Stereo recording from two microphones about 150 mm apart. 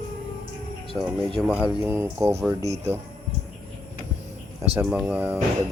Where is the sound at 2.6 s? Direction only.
45° right (ahead or behind).